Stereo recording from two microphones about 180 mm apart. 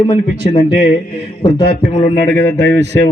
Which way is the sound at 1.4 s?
25° left (ahead or behind).